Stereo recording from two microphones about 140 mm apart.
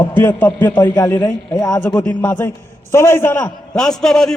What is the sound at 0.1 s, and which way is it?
A man's voice, 15° left (ahead or behind).